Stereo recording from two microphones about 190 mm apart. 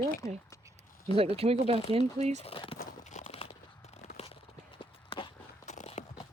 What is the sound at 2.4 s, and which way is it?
Speech, 30° left (ahead or behind).